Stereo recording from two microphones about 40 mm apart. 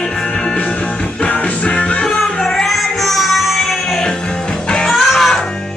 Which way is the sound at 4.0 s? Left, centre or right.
Centre.